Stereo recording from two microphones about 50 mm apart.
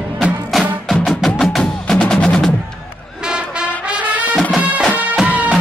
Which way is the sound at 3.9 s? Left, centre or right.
Right.